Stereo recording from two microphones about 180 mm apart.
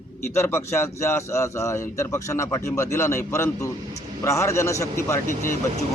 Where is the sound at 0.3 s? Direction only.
15° left (ahead or behind).